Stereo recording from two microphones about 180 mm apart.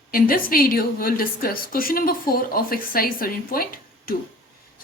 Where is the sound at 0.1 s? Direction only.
50° left (ahead or behind).